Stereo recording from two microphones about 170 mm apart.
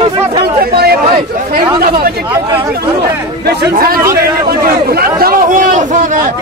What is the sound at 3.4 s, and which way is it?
A man's voice, 60° right (ahead or behind).